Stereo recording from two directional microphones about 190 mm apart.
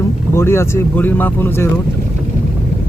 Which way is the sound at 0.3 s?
15° left (ahead or behind).